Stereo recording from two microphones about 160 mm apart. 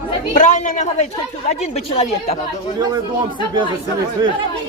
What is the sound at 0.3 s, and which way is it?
Speech, 50° left (ahead or behind).